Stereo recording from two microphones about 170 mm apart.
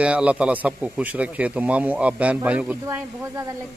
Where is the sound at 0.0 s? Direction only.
5° right (ahead or behind).